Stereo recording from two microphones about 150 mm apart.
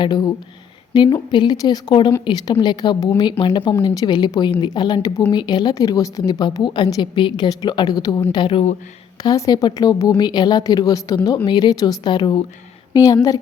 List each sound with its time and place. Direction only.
0.0 s a woman's voice: 30° left (ahead or behind)